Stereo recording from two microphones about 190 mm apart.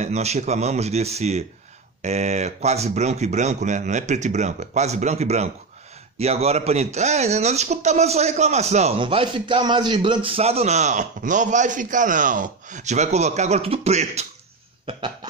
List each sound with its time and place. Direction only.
0.0 s speech: 35° right (ahead or behind)
14.9 s cough: 25° right (ahead or behind)